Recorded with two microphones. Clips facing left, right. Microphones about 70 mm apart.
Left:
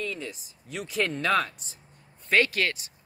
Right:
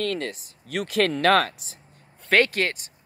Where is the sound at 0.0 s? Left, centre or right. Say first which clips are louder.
Right 7 dB; right.